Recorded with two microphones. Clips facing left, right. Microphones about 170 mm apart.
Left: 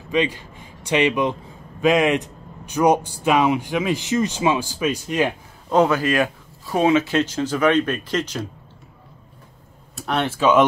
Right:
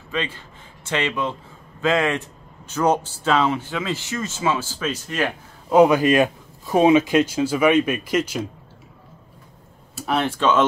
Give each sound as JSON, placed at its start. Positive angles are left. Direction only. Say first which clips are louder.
{"t": 0.1, "sound": "a man's voice", "louder": "left 6 dB", "side_deg": 15}
{"t": 5.7, "sound": "speech", "louder": "right 3 dB", "side_deg": -15}
{"t": 9.9, "sound": "speech", "louder": "even", "side_deg": 0}